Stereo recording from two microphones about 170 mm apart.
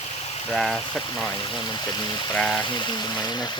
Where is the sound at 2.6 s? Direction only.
25° left (ahead or behind).